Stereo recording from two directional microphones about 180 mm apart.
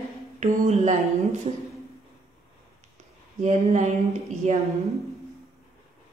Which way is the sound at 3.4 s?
40° right (ahead or behind).